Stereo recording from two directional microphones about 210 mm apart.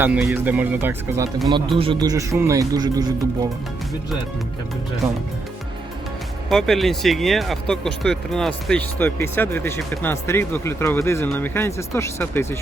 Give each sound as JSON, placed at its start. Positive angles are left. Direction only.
{"t": 0.0, "sound": "speech", "side_deg": -5}
{"t": 6.5, "sound": "speech", "side_deg": 0}